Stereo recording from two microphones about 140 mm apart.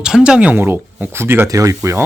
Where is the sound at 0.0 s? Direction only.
5° right (ahead or behind).